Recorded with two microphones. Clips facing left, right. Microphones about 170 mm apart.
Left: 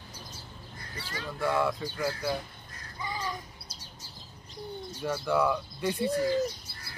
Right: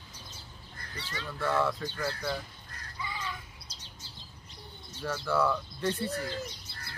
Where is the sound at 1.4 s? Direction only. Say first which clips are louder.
Left 1 dB; 10° left (ahead or behind).